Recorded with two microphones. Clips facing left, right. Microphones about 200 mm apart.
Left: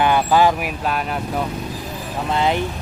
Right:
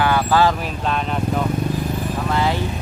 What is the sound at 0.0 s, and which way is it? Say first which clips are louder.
Speech: left 1 dB; 20° left (ahead or behind).